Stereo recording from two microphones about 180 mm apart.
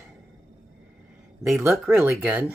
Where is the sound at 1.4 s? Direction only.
Centre (ahead or behind).